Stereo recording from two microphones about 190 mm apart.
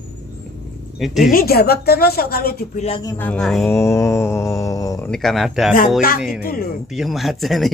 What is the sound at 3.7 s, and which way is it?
Mantra, 15° left (ahead or behind).